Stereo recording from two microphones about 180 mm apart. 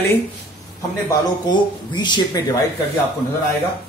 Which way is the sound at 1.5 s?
25° left (ahead or behind).